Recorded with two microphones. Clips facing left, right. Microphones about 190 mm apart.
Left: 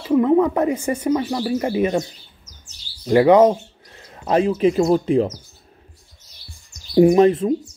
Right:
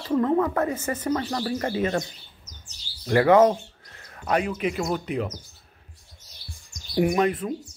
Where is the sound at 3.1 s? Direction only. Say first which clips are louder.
Left 5 dB; 20° left (ahead or behind).